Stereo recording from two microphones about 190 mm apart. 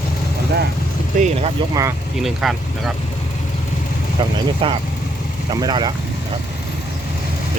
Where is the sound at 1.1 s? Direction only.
40° right (ahead or behind).